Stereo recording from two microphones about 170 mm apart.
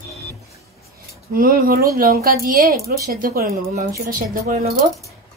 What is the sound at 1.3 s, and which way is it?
Speech, 55° right (ahead or behind).